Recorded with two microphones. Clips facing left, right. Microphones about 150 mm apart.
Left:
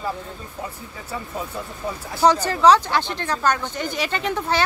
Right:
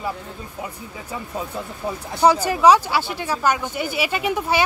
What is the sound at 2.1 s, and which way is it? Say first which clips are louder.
Speech: right 1 dB; 10° right (ahead or behind).